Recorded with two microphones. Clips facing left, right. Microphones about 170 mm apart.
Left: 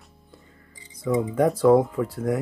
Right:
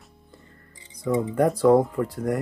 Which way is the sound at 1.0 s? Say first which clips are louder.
Even; 5° left (ahead or behind).